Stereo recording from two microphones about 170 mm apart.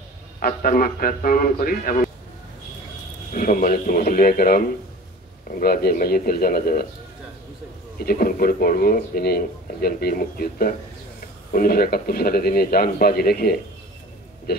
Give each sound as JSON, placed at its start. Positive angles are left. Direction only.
{"t": 0.4, "sound": "speech", "side_deg": 55}
{"t": 3.3, "sound": "speech", "side_deg": 50}
{"t": 8.0, "sound": "speech", "side_deg": 60}